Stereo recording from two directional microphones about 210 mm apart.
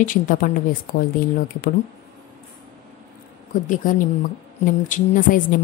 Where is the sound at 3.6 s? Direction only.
35° left (ahead or behind).